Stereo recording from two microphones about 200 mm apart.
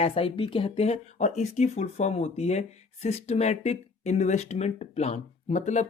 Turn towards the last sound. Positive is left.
turn(degrees=35)  # may be behind; listen again after turning